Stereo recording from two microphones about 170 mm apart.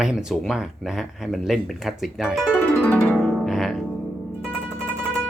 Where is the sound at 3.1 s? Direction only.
Centre (ahead or behind).